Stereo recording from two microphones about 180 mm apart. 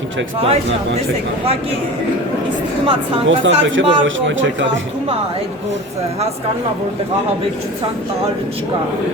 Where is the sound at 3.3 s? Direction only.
90° right.